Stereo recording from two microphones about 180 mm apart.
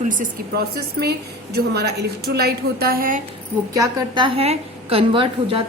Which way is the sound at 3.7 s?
20° right (ahead or behind).